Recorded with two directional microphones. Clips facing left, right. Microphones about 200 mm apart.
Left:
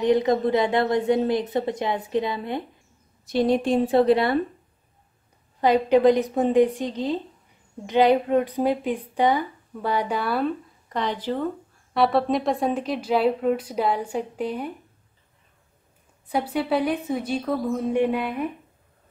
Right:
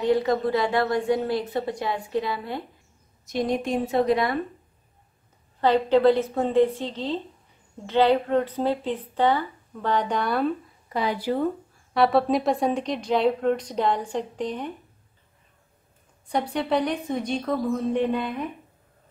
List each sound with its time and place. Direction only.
0.0 s a woman's voice: 20° left (ahead or behind)
3.3 s a woman's voice: 30° left (ahead or behind)
5.6 s a woman's voice: 15° left (ahead or behind)
16.3 s a woman's voice: 5° left (ahead or behind)